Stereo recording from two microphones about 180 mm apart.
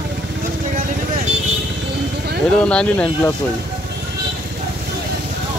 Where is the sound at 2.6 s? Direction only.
5° left (ahead or behind).